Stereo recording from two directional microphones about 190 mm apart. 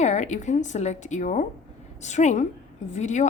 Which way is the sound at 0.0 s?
35° left (ahead or behind).